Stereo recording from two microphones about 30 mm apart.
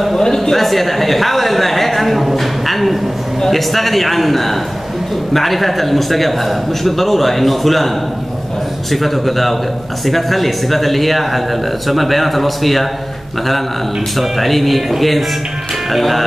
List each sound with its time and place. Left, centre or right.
0.2 s a sound: centre
0.6 s a woman's voice: centre
8.9 s a man's voice: centre
14.1 s a man's voice: centre